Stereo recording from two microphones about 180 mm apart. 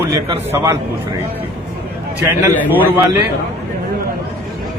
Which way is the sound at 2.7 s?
10° right (ahead or behind).